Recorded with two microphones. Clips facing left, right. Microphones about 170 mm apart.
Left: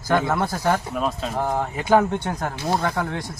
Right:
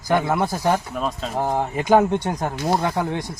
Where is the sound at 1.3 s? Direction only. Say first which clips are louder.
Right 5 dB; 15° right (ahead or behind).